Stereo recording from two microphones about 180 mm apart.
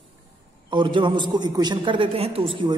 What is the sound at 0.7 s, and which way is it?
A man's voice, 25° right (ahead or behind).